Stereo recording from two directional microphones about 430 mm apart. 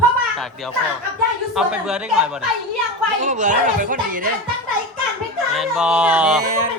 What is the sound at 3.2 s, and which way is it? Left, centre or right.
Speech, centre.